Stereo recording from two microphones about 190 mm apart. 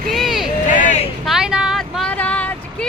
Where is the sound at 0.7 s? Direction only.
40° left (ahead or behind).